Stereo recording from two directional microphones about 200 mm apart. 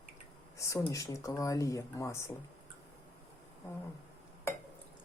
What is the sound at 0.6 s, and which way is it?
Speech, 15° left (ahead or behind).